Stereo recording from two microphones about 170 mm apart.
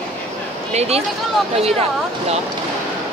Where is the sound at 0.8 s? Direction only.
35° right (ahead or behind).